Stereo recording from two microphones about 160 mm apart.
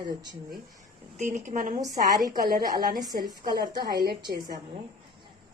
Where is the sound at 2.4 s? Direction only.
70° right (ahead or behind).